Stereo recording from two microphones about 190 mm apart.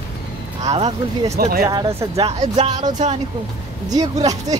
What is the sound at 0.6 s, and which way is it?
Speech, 35° right (ahead or behind).